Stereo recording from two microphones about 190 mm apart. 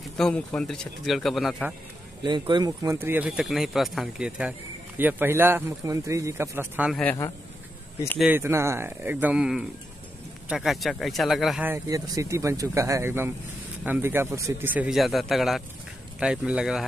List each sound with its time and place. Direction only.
0.2 s speech: 5° left (ahead or behind)
2.2 s speech: 25° right (ahead or behind)
6.9 s speech: 5° left (ahead or behind)
8.2 s speech: 10° right (ahead or behind)
11.7 s speech: 15° right (ahead or behind)